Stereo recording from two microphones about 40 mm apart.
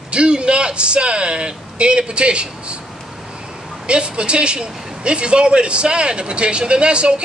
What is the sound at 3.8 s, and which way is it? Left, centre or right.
A man's voice, right.